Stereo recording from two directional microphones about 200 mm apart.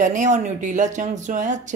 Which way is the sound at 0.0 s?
40° right (ahead or behind).